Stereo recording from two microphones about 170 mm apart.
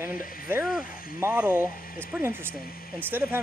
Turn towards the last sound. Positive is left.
turn(degrees=-10)  # may be behind; listen again after turning